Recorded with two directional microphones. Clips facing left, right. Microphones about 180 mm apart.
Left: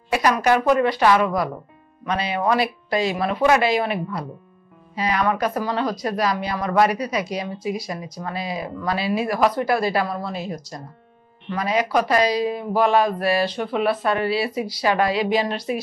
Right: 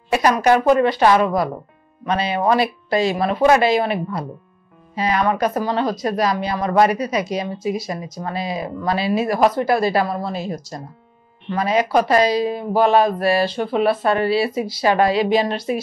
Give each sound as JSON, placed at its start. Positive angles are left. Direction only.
{"t": 0.1, "sound": "a woman's voice", "side_deg": -25}